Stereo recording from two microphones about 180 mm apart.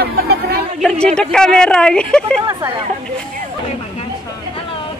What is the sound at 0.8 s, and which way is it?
Speech, 5° left (ahead or behind).